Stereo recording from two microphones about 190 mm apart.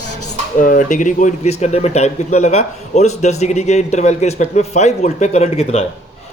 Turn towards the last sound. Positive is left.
turn(degrees=35)  # may be behind; listen again after turning